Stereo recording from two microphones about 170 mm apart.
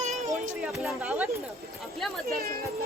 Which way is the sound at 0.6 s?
5° right (ahead or behind).